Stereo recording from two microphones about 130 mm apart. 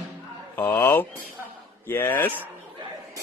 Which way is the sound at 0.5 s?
20° left (ahead or behind).